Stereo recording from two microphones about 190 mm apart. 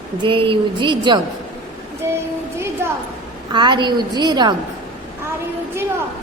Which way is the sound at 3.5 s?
25° right (ahead or behind).